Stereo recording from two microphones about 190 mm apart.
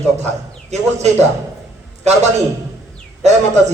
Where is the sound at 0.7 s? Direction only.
35° right (ahead or behind).